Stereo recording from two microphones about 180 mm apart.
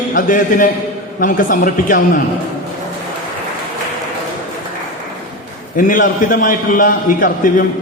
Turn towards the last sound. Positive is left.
turn(degrees=50)  # may be behind; listen again after turning